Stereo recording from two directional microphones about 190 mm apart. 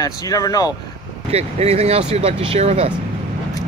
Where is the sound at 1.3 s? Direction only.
35° right (ahead or behind).